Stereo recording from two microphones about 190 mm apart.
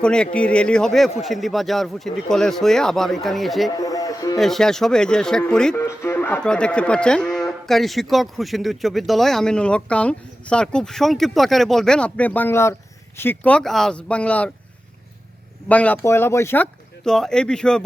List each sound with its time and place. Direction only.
0.0 s speech: 5° left (ahead or behind)
3.7 s music: 20° left (ahead or behind)
4.4 s speech: centre (ahead or behind)
15.7 s speech: 5° left (ahead or behind)